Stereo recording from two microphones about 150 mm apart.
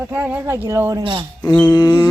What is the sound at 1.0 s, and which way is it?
Speech, 35° right (ahead or behind).